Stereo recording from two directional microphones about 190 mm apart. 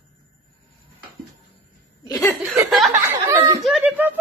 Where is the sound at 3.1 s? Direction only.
15° right (ahead or behind).